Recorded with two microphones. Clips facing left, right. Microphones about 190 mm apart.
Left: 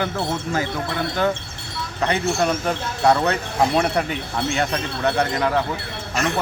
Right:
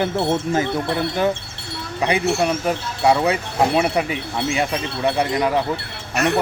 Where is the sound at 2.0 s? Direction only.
10° right (ahead or behind).